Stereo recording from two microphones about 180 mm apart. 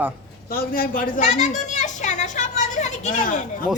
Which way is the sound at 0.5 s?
55° left (ahead or behind).